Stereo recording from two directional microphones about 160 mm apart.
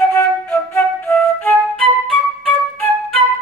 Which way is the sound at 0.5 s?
5° left (ahead or behind).